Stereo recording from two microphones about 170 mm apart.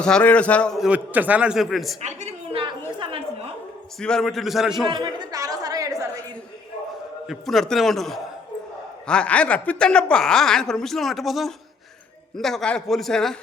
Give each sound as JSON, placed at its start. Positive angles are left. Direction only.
{"t": 0.0, "sound": "a man's voice", "side_deg": 5}
{"t": 0.9, "sound": "a man's voice", "side_deg": -10}
{"t": 2.0, "sound": "a sound", "side_deg": -40}
{"t": 4.0, "sound": "a woman's voice", "side_deg": 5}
{"t": 5.2, "sound": "chatter", "side_deg": -20}
{"t": 7.3, "sound": "a woman's voice", "side_deg": 0}